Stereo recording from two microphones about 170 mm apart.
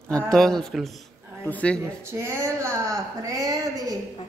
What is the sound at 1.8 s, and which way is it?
Speech, 15° right (ahead or behind).